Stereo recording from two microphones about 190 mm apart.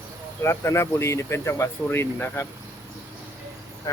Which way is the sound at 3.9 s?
15° left (ahead or behind).